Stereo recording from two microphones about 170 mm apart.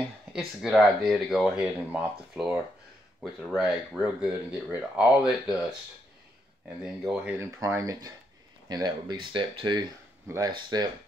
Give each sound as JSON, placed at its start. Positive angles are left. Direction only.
{"t": 0.3, "sound": "speech", "side_deg": 0}
{"t": 6.8, "sound": "speech", "side_deg": -5}
{"t": 7.3, "sound": "speech", "side_deg": -15}
{"t": 10.2, "sound": "speech", "side_deg": -15}